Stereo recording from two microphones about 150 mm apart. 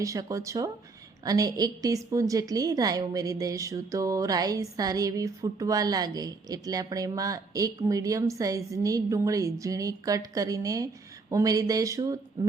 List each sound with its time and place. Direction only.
0.0 s a woman's voice: 20° right (ahead or behind)